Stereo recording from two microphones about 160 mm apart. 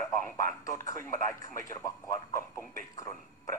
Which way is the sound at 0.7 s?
20° left (ahead or behind).